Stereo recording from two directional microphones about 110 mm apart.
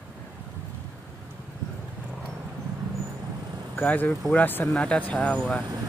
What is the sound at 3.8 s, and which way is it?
Speech, 15° left (ahead or behind).